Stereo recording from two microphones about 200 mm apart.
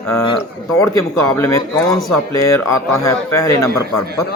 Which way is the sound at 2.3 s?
15° left (ahead or behind).